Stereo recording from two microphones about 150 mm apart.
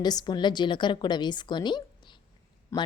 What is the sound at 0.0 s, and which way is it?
A woman's voice, 25° left (ahead or behind).